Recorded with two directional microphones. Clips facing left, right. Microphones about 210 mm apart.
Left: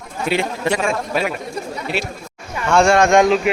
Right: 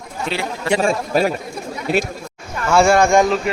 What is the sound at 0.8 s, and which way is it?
Speech, 35° right (ahead or behind).